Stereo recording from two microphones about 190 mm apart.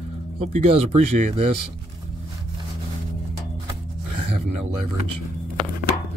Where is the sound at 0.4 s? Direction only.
30° right (ahead or behind).